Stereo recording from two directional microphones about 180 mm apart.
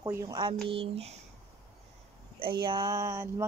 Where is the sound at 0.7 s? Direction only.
35° right (ahead or behind).